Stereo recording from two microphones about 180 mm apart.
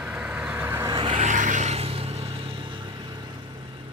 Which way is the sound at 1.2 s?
45° right (ahead or behind).